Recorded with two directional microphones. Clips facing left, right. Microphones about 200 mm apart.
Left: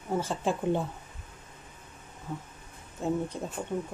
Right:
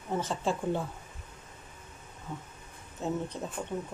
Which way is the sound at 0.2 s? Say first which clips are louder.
Left 1 dB; 15° left (ahead or behind).